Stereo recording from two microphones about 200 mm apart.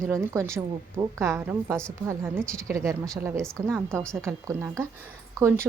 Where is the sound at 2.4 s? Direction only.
5° left (ahead or behind).